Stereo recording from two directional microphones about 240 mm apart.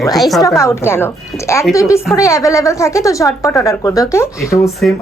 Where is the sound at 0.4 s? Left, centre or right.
Centre.